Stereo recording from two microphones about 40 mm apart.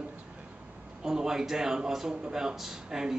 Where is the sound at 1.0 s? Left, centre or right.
Centre.